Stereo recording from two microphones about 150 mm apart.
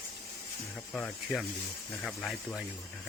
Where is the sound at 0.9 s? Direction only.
5° left (ahead or behind).